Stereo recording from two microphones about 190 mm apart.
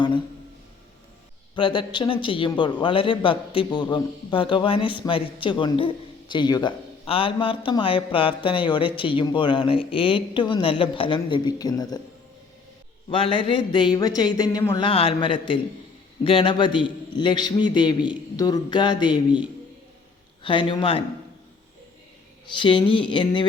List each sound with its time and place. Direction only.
1.5 s a man's voice: 25° left (ahead or behind)
13.1 s a man's voice: 25° left (ahead or behind)
20.4 s a man's voice: 25° left (ahead or behind)
22.5 s a man's voice: 25° left (ahead or behind)